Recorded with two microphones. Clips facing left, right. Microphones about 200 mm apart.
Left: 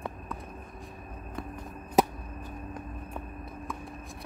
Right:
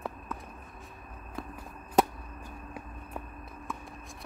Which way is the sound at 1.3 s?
Centre (ahead or behind).